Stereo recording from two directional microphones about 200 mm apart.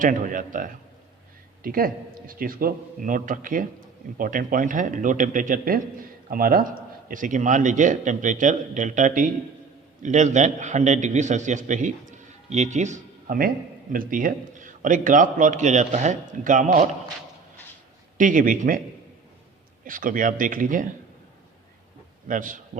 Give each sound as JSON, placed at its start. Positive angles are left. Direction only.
{"t": 0.0, "sound": "a man's voice", "side_deg": -40}
{"t": 18.2, "sound": "a man's voice", "side_deg": -40}
{"t": 19.8, "sound": "a man's voice", "side_deg": -45}
{"t": 22.3, "sound": "a man's voice", "side_deg": -40}